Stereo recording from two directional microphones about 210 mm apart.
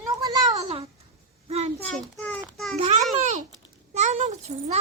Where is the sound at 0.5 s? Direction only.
30° right (ahead or behind).